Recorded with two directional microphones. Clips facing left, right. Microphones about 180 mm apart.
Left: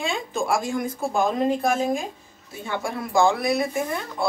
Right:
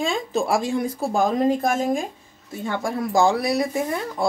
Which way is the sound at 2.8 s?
40° right (ahead or behind).